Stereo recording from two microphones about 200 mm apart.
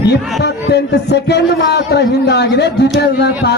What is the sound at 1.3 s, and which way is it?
A man's voice, 55° left (ahead or behind).